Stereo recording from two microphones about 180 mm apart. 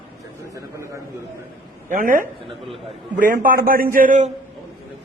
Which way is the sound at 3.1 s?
50° right (ahead or behind).